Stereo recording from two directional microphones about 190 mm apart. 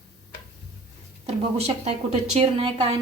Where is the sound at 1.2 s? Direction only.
35° right (ahead or behind).